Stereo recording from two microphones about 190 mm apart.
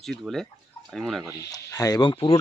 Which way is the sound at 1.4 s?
15° left (ahead or behind).